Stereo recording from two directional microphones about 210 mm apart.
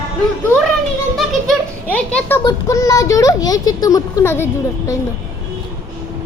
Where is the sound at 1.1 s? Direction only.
5° left (ahead or behind).